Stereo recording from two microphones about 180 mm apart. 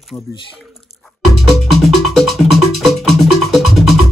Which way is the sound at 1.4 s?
Centre (ahead or behind).